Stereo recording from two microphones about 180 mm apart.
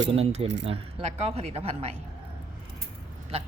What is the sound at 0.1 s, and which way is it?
Speech, 35° right (ahead or behind).